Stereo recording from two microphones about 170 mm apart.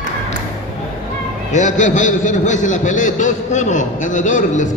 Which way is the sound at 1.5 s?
45° left (ahead or behind).